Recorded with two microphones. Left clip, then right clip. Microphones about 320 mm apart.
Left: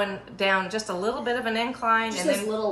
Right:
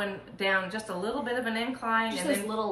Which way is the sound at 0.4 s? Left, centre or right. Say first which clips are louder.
Left 4 dB; left.